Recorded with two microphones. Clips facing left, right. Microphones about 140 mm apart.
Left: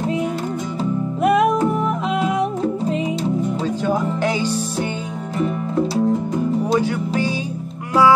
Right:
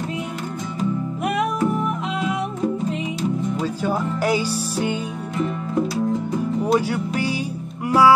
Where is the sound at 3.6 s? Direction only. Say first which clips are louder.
Left 2 dB; 10° right (ahead or behind).